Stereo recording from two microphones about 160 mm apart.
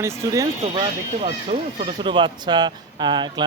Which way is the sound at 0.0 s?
20° right (ahead or behind).